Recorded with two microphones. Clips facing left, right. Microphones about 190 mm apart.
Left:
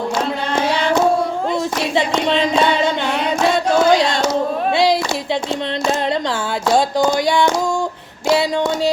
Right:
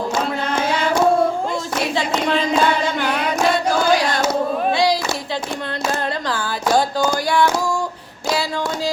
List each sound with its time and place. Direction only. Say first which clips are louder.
2.5 s music: left 2 dB; 25° left (ahead or behind)
3.7 s a sound: left 3 dB; 25° left (ahead or behind)
4.7 s child singing: left 2 dB; 25° left (ahead or behind)
6.7 s music: left 3 dB; 25° left (ahead or behind)